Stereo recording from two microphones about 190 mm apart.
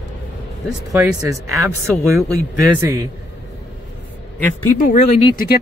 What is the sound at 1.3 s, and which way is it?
Speech, 15° right (ahead or behind).